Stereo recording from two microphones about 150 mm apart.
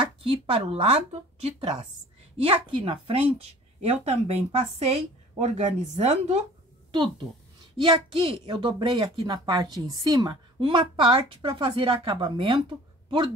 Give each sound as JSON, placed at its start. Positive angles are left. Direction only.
{"t": 0.0, "sound": "a woman's voice", "side_deg": -35}
{"t": 7.8, "sound": "a woman's voice", "side_deg": -35}